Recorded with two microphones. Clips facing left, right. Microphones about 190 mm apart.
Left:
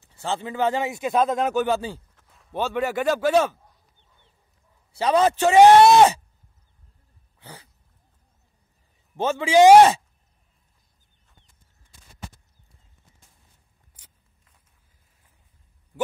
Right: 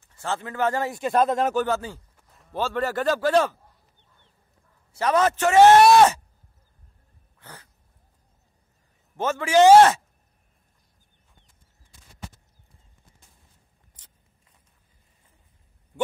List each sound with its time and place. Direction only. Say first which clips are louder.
0.2 s speech: left 1 dB; 25° left (ahead or behind)
0.9 s speech: even; centre (ahead or behind)
1.7 s speech: left 2 dB; 30° left (ahead or behind)
2.5 s speech: left 1 dB; 20° left (ahead or behind)
5.0 s speech: left 2 dB; 15° left (ahead or behind)
9.1 s a man's voice: left 2 dB; 25° left (ahead or behind)
9.6 s speech: left 1 dB; 15° left (ahead or behind)
14.0 s a sound: left 3 dB; 10° left (ahead or behind)